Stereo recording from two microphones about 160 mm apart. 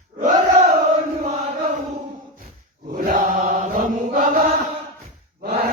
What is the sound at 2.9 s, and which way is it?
Chant, 60° right (ahead or behind).